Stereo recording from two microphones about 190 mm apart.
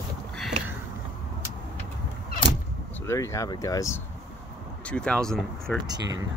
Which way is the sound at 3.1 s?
15° left (ahead or behind).